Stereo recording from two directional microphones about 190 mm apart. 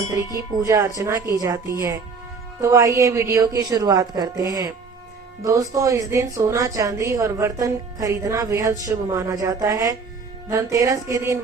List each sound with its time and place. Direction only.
0.6 s speech: 20° right (ahead or behind)